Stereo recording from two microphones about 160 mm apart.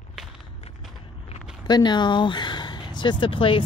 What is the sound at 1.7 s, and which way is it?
Speech, 25° left (ahead or behind).